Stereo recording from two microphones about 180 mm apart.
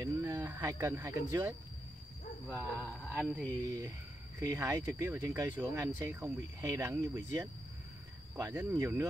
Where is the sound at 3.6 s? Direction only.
20° right (ahead or behind).